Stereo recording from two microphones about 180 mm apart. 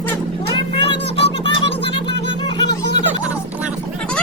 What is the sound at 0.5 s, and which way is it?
Music, 30° left (ahead or behind).